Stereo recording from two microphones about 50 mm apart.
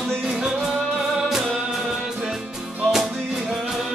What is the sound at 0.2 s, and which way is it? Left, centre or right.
Music, centre.